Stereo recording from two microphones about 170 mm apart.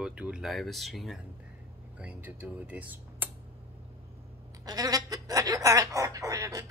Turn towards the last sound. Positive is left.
turn(degrees=-20)  # may be behind; listen again after turning